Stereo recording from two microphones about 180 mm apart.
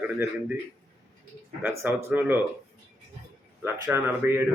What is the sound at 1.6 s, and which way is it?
Speech, 10° right (ahead or behind).